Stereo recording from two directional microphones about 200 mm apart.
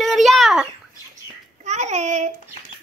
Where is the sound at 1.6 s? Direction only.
35° right (ahead or behind).